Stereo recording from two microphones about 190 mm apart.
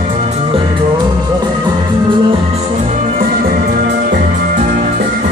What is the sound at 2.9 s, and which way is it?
Music, 45° right (ahead or behind).